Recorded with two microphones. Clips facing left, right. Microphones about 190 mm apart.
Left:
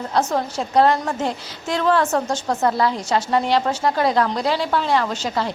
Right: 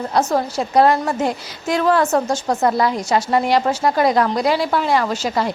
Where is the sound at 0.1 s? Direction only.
10° right (ahead or behind).